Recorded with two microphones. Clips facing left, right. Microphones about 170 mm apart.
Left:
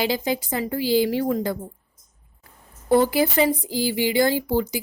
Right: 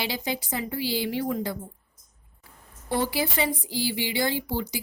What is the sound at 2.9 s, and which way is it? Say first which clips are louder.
Speech: left 8 dB; 50° left (ahead or behind).